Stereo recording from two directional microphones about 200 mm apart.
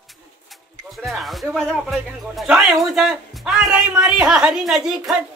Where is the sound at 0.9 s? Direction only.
Centre (ahead or behind).